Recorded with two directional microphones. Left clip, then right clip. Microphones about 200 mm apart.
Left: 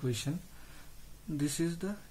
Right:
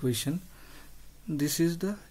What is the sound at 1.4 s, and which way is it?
Speech, 40° right (ahead or behind).